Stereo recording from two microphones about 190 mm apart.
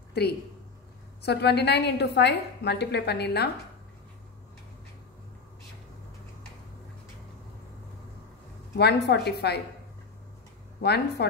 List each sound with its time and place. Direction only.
0.1 s a woman's voice: 60° left (ahead or behind)
8.7 s a woman's voice: 60° left (ahead or behind)
10.8 s a woman's voice: 60° left (ahead or behind)